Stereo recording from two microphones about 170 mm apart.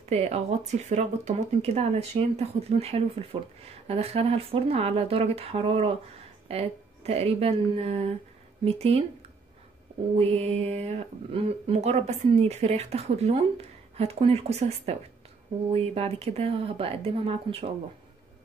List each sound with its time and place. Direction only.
0.1 s speech: 40° right (ahead or behind)
10.1 s speech: 35° right (ahead or behind)